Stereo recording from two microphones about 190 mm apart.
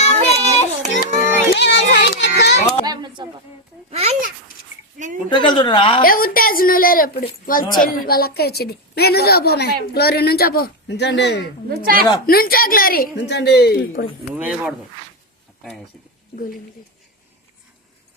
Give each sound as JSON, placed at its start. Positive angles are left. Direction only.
{"t": 0.0, "sound": "child singing", "side_deg": 35}
{"t": 0.9, "sound": "a sound", "side_deg": 50}
{"t": 2.8, "sound": "a sound", "side_deg": -20}
{"t": 3.9, "sound": "a sound", "side_deg": -30}
{"t": 5.3, "sound": "a woman's voice", "side_deg": 25}
{"t": 6.0, "sound": "a woman's voice", "side_deg": 50}
{"t": 11.7, "sound": "speech", "side_deg": -50}
{"t": 12.2, "sound": "a woman's voice", "side_deg": 50}
{"t": 14.3, "sound": "speech", "side_deg": -10}